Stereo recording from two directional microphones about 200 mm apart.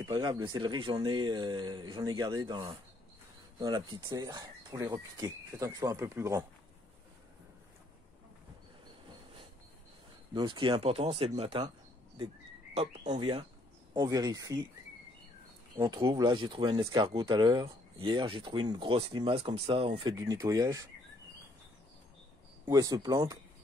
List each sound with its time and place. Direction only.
0.0 s speech: 20° right (ahead or behind)
10.3 s speech: 25° right (ahead or behind)
12.7 s speech: 35° right (ahead or behind); by 14.7 s 15° right (ahead or behind)
15.8 s speech: 20° right (ahead or behind)
22.7 s speech: 20° right (ahead or behind)